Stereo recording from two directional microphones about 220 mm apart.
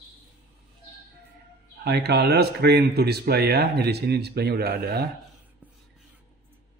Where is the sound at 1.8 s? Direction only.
45° right (ahead or behind).